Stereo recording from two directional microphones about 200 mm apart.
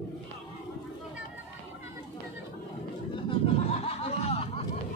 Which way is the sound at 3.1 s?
25° left (ahead or behind).